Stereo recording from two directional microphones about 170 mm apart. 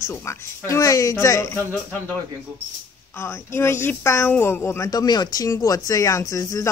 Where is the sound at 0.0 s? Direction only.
15° left (ahead or behind).